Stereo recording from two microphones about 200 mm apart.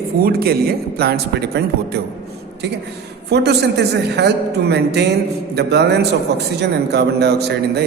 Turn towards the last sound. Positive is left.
turn(degrees=-55)  # may be behind; listen again after turning